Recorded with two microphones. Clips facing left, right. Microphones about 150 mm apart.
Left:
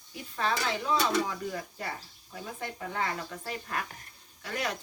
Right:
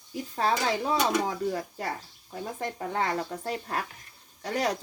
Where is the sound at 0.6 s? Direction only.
35° right (ahead or behind).